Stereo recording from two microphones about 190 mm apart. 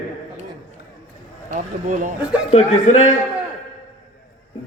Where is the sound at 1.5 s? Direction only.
40° right (ahead or behind).